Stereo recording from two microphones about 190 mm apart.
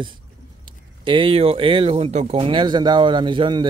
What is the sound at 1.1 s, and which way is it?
Speech, 30° right (ahead or behind).